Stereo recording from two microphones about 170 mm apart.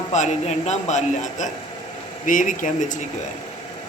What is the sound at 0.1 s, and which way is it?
Speech, 45° left (ahead or behind).